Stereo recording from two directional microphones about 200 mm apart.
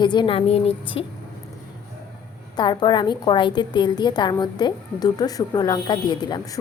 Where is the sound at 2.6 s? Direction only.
20° left (ahead or behind).